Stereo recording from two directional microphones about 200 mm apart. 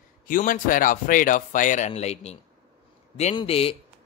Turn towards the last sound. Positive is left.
turn(degrees=30)  # may be behind; listen again after turning